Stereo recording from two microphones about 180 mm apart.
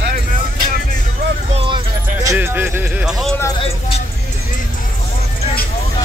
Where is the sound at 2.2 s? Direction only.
10° right (ahead or behind).